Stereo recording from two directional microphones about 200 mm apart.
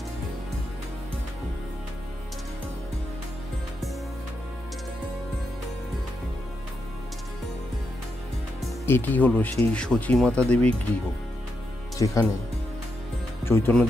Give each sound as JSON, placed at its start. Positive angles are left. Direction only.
{"t": 8.8, "sound": "speech", "side_deg": 10}
{"t": 12.0, "sound": "speech", "side_deg": 15}
{"t": 13.5, "sound": "speech", "side_deg": 10}